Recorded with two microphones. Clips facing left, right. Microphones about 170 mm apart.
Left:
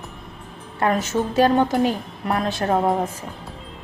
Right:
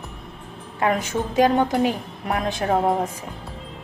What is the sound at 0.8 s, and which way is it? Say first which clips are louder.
A woman's voice: left 1 dB; 10° right (ahead or behind).